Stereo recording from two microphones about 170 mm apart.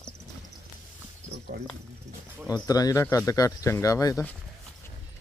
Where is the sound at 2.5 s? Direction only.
20° left (ahead or behind).